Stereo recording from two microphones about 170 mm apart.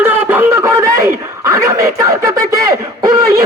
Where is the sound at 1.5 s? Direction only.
20° right (ahead or behind).